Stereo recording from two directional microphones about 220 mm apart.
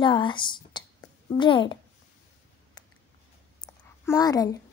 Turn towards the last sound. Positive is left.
turn(degrees=15)  # may be behind; listen again after turning